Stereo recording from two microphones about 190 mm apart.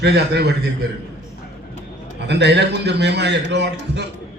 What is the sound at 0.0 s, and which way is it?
Speech, 60° right (ahead or behind).